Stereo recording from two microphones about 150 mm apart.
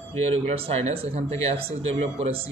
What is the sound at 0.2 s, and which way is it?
A man's voice, 40° right (ahead or behind).